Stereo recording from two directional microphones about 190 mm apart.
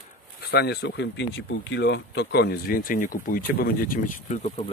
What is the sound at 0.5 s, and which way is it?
Speech, 60° left (ahead or behind).